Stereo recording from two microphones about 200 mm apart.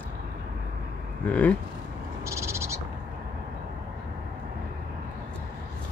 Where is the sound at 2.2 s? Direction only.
15° right (ahead or behind).